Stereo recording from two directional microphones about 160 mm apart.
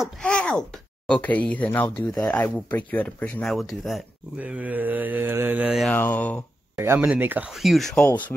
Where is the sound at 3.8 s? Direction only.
5° right (ahead or behind).